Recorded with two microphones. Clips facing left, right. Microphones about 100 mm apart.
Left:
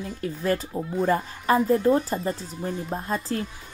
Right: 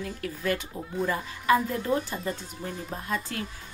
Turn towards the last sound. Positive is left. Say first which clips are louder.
# left 5 dB
turn(degrees=35)  # may be behind; listen again after turning